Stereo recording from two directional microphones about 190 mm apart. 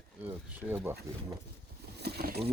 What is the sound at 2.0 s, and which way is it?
Boat, 55° right (ahead or behind).